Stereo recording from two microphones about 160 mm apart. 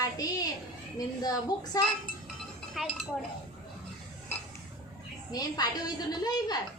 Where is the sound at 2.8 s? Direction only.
5° right (ahead or behind).